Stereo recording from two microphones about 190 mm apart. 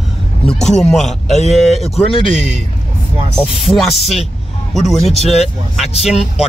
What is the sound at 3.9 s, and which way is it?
Speech, 35° left (ahead or behind).